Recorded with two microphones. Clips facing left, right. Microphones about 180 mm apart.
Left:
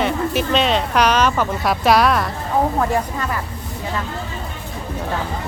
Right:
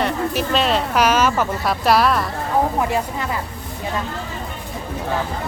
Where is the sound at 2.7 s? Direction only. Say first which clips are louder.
Left 1 dB; 15° right (ahead or behind).